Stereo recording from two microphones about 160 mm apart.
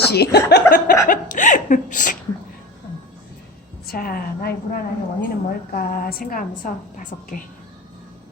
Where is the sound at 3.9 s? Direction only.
65° left (ahead or behind).